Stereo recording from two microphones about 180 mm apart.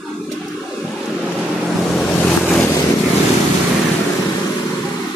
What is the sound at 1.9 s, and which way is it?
Waves, 5° left (ahead or behind).